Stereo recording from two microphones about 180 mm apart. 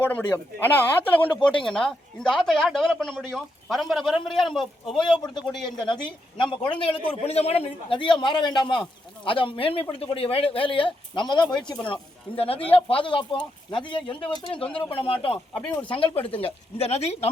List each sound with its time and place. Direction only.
0.0 s speech: 10° left (ahead or behind)
5.2 s a man's voice: 25° left (ahead or behind)